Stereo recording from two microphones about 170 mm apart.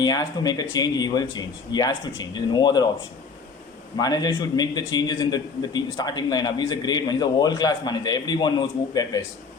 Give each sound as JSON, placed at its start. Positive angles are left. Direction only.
{"t": 0.0, "sound": "a man's voice", "side_deg": 25}
{"t": 3.9, "sound": "a man's voice", "side_deg": 25}